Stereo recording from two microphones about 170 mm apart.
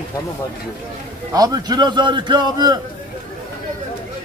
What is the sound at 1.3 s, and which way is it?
A man's voice, 20° right (ahead or behind).